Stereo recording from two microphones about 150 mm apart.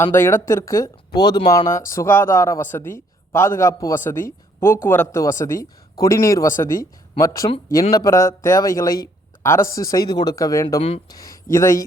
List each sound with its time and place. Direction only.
0.0 s a man's voice: 15° left (ahead or behind)
10.8 s speech: 40° left (ahead or behind)
11.1 s speech: 20° left (ahead or behind)